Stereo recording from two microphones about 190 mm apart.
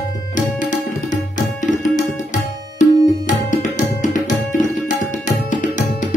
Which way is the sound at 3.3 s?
40° left (ahead or behind).